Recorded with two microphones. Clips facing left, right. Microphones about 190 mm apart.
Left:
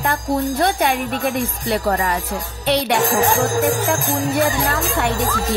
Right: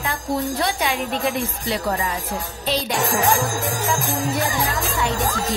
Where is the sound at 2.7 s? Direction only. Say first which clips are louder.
Left 6 dB; 65° left (ahead or behind).